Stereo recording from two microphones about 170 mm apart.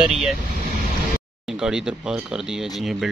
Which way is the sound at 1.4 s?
5° right (ahead or behind).